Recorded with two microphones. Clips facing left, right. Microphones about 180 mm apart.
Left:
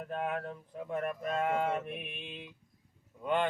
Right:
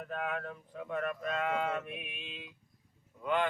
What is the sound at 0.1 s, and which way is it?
Speech, 25° left (ahead or behind).